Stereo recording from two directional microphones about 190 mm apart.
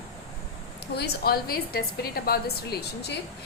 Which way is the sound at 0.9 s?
55° left (ahead or behind).